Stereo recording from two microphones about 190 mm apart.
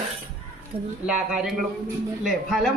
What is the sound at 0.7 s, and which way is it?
Speech, 30° right (ahead or behind).